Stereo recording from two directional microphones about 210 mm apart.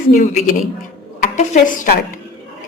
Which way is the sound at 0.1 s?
40° left (ahead or behind).